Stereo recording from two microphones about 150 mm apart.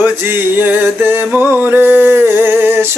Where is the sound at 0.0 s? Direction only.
15° right (ahead or behind).